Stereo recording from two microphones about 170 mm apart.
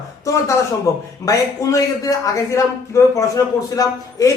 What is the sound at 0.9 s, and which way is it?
A man's voice, 15° left (ahead or behind).